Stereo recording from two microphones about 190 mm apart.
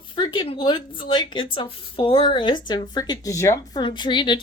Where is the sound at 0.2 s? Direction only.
25° left (ahead or behind).